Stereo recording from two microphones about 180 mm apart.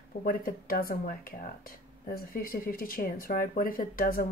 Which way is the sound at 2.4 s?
55° left (ahead or behind).